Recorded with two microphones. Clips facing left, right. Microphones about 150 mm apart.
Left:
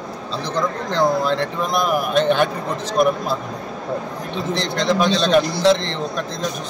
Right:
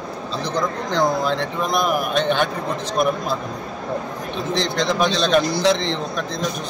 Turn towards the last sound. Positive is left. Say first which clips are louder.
# left 2 dB
turn(degrees=0)  # may be behind; listen again after turning